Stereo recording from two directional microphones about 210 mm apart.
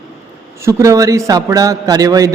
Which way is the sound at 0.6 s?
15° right (ahead or behind).